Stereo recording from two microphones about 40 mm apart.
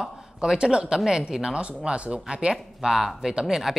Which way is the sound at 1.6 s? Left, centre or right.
Right.